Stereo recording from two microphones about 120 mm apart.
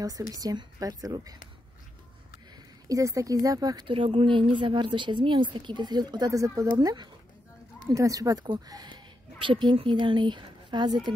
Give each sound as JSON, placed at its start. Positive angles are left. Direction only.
{"t": 0.4, "sound": "a woman's voice", "side_deg": -30}
{"t": 2.9, "sound": "a woman's voice", "side_deg": -25}